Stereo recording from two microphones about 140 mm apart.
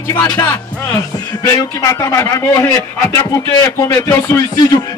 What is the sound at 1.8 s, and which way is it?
A man's voice, 20° left (ahead or behind).